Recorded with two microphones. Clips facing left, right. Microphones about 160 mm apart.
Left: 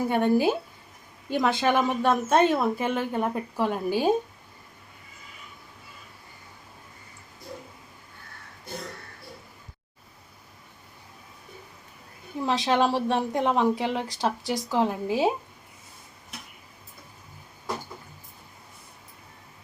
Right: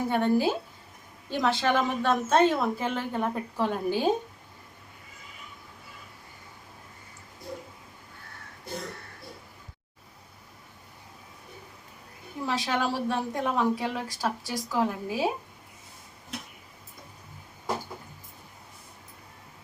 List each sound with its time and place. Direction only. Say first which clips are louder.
0.1 s a woman's voice: left 2 dB; 15° left (ahead or behind)
12.5 s speech: left 5 dB; 20° left (ahead or behind)